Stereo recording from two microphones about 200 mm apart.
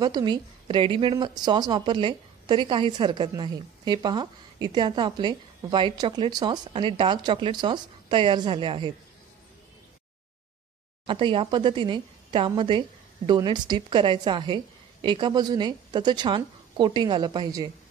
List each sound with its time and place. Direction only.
0.0 s a woman's voice: 20° right (ahead or behind)
11.1 s a woman's voice: 25° right (ahead or behind)